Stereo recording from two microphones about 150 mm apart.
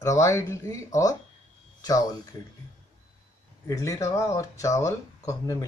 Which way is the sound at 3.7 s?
20° left (ahead or behind).